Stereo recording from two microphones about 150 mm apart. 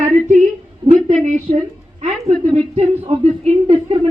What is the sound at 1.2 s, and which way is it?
A woman's voice, 55° right (ahead or behind).